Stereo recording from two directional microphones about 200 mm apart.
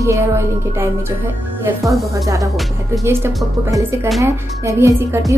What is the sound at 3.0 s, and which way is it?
A woman's voice, 10° right (ahead or behind).